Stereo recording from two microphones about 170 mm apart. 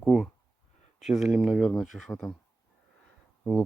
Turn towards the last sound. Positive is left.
turn(degrees=5)  # may be behind; listen again after turning